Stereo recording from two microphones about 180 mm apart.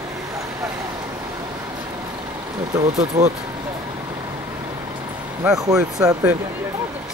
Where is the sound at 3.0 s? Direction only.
40° right (ahead or behind).